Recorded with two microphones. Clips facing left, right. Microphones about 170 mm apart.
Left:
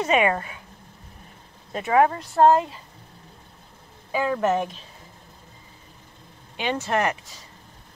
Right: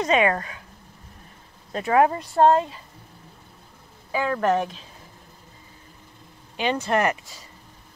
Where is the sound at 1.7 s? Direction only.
10° left (ahead or behind).